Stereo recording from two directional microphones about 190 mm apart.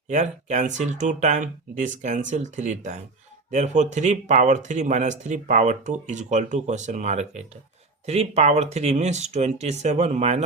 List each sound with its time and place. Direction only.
0.1 s speech: 40° right (ahead or behind)